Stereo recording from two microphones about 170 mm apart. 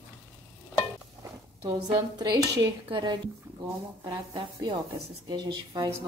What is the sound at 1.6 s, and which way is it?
A woman's voice, 25° right (ahead or behind).